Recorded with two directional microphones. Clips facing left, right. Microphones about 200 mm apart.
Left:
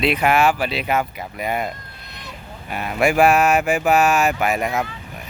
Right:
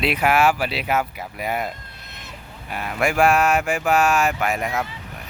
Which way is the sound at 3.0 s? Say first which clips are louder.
Left 3 dB; 15° left (ahead or behind).